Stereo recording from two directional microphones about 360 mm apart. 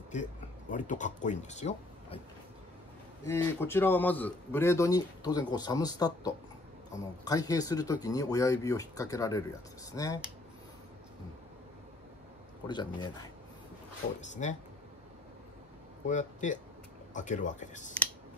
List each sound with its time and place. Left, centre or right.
0.1 s speech: left
3.3 s a man's voice: centre
14.4 s speech: centre
16.1 s speech: centre